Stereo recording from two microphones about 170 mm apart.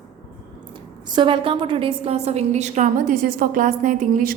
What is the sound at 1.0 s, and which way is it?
A woman's voice, 25° right (ahead or behind).